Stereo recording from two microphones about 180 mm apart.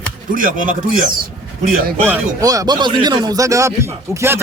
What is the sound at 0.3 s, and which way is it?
Speech, 50° right (ahead or behind).